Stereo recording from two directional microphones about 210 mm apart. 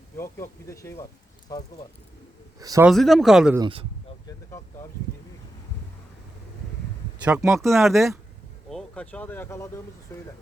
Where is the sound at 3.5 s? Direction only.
20° right (ahead or behind).